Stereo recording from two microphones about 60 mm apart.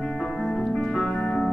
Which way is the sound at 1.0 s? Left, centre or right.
Left.